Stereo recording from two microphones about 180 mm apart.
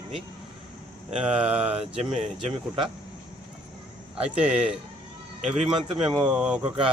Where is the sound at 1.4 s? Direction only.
5° right (ahead or behind).